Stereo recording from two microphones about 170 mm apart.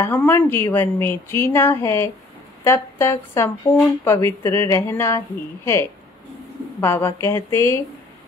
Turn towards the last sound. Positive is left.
turn(degrees=15)  # may be behind; listen again after turning